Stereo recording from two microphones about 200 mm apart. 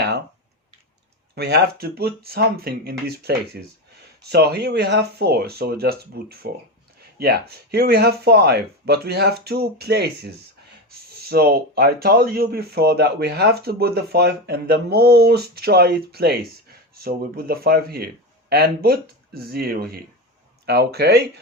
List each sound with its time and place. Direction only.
1.4 s speech: 55° right (ahead or behind)